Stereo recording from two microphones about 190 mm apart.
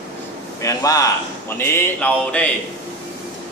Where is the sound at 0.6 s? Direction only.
15° left (ahead or behind).